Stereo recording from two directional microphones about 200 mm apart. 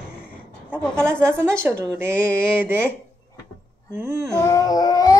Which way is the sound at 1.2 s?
10° right (ahead or behind).